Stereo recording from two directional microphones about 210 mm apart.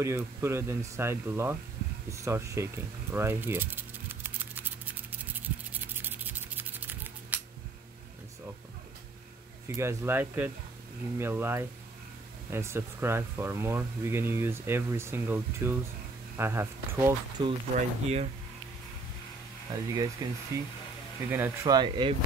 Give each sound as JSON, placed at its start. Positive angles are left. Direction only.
{"t": 0.0, "sound": "speech", "side_deg": -15}
{"t": 5.3, "sound": "music", "side_deg": -10}
{"t": 9.7, "sound": "speech", "side_deg": -15}
{"t": 18.0, "sound": "speech", "side_deg": -30}
{"t": 19.7, "sound": "speech", "side_deg": -20}